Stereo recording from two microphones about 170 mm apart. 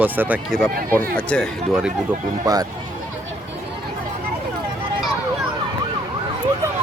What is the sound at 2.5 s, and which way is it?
Speech, 20° right (ahead or behind).